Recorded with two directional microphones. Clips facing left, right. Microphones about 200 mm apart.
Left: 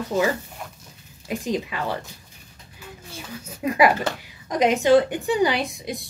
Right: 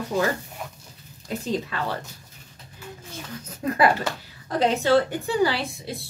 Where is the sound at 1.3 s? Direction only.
10° left (ahead or behind).